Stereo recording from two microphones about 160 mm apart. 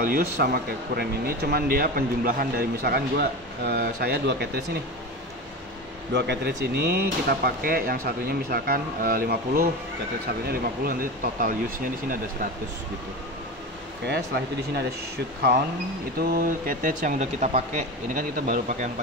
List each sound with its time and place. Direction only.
0.0 s speech: 70° right (ahead or behind); by 4.5 s 90° right
6.1 s speech: 90° right; by 12.4 s 60° right (ahead or behind)
14.0 s speech: 90° right
16.2 s speech: 60° right (ahead or behind); by 17.6 s 45° right (ahead or behind)
18.1 s speech: 55° right (ahead or behind)